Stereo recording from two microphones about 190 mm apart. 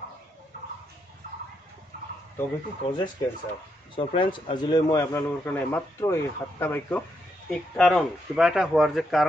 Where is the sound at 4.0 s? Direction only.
25° left (ahead or behind).